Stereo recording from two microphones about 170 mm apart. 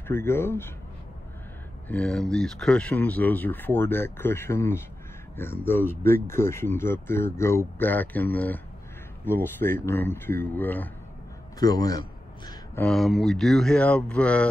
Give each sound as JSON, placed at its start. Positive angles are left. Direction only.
{"t": 0.1, "sound": "speech", "side_deg": 15}
{"t": 1.9, "sound": "speech", "side_deg": 5}
{"t": 11.6, "sound": "a man's voice", "side_deg": 20}
{"t": 12.7, "sound": "speech", "side_deg": 5}